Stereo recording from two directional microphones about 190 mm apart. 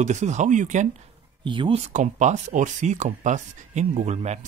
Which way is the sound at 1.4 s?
25° right (ahead or behind).